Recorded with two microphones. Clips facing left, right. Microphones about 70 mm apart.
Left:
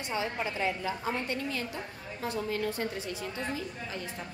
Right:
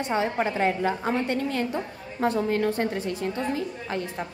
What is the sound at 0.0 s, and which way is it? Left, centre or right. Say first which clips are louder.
A woman's voice: right 8 dB; right.